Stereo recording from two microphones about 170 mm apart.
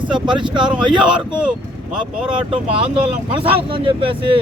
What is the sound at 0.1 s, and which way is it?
Speech, 30° right (ahead or behind).